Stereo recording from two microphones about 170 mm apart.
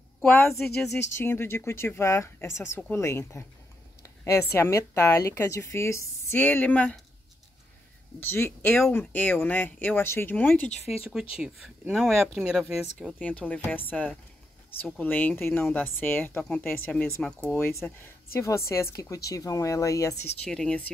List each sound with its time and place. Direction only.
0.2 s speech: 15° left (ahead or behind)
4.0 s a sound: 15° left (ahead or behind)
4.6 s speech: 15° left (ahead or behind)
8.2 s speech: 10° left (ahead or behind)
11.3 s speech: 5° right (ahead or behind)
13.2 s speech: 10° left (ahead or behind)
20.4 s speech: 5° left (ahead or behind)